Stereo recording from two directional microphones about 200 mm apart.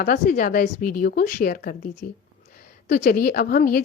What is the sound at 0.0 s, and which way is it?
A woman's voice, 45° left (ahead or behind).